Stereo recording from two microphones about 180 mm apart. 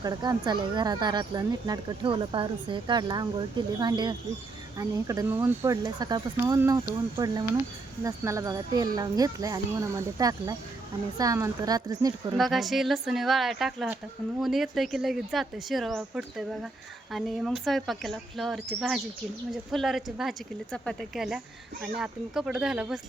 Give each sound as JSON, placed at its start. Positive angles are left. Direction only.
{"t": 0.0, "sound": "speech", "side_deg": -25}
{"t": 5.8, "sound": "speech", "side_deg": -25}
{"t": 8.0, "sound": "speech", "side_deg": -15}
{"t": 12.4, "sound": "speech", "side_deg": 0}